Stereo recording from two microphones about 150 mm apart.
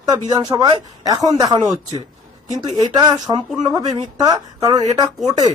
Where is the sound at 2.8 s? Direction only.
25° right (ahead or behind).